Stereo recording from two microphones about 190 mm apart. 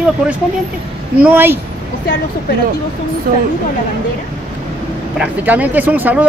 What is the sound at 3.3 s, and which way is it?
Speech, 45° right (ahead or behind).